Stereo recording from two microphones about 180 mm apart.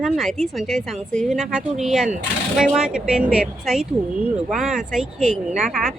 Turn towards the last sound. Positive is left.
turn(degrees=0)  # may be behind; listen again after turning